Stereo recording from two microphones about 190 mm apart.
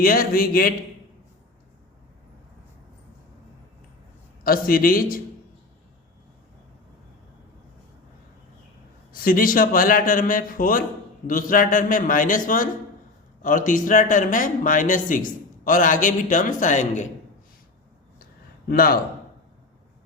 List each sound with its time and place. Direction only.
0.0 s speech: 50° left (ahead or behind)
4.4 s speech: 50° left (ahead or behind)
9.2 s speech: 50° left (ahead or behind)
18.7 s speech: 50° left (ahead or behind)